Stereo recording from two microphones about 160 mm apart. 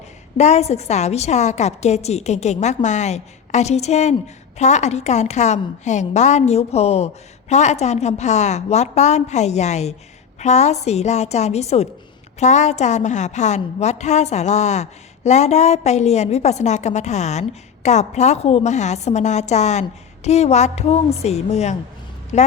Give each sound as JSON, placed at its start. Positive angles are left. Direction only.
{"t": 0.3, "sound": "a woman's voice", "side_deg": 45}